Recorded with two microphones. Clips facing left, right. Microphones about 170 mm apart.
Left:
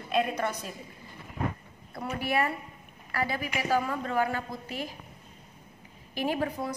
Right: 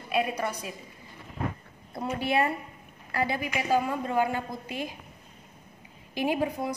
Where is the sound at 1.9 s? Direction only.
20° right (ahead or behind).